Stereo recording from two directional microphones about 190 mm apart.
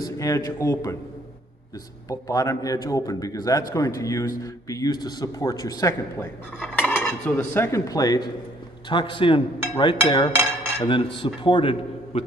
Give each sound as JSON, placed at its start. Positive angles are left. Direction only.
{"t": 0.0, "sound": "a man's voice", "side_deg": 20}
{"t": 2.0, "sound": "a man's voice", "side_deg": 15}